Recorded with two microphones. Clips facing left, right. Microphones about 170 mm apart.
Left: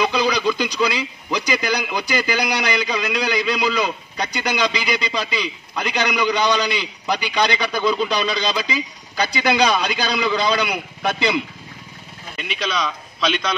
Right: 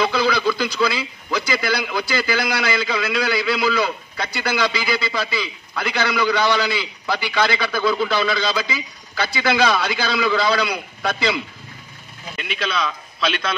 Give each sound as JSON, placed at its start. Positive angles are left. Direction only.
{"t": 0.0, "sound": "a man's voice", "side_deg": 15}
{"t": 12.4, "sound": "a man's voice", "side_deg": 0}